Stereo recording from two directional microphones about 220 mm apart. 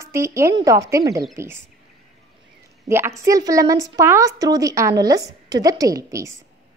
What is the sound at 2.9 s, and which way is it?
A woman's voice, 10° right (ahead or behind).